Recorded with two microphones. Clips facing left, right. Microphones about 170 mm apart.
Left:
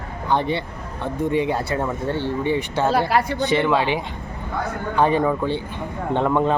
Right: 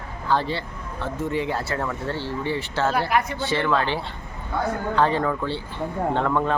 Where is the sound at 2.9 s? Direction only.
35° left (ahead or behind).